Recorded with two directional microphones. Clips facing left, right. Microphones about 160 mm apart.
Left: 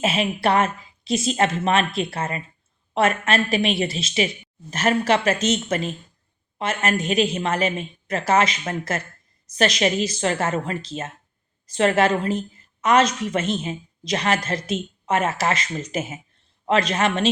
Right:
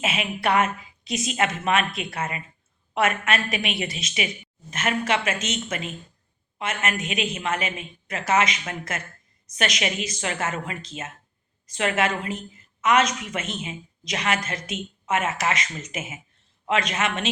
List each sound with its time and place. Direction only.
0.0 s a woman's voice: 35° left (ahead or behind)